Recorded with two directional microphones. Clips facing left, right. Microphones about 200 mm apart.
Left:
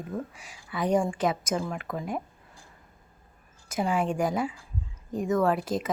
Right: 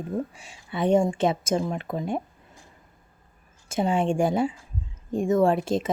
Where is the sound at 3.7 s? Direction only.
25° right (ahead or behind).